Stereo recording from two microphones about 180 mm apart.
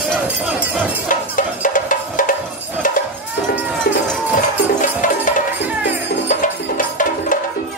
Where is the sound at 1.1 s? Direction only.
50° left (ahead or behind).